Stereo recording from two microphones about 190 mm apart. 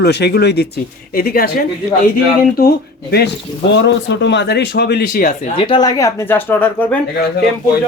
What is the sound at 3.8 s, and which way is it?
Speech, 70° left (ahead or behind).